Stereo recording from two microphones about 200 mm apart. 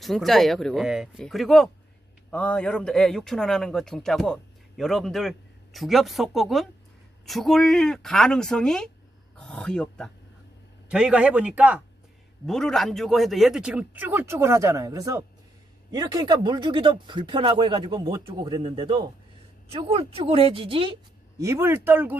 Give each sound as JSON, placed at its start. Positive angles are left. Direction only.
{"t": 0.0, "sound": "speech", "side_deg": 0}
{"t": 21.3, "sound": "speech", "side_deg": -15}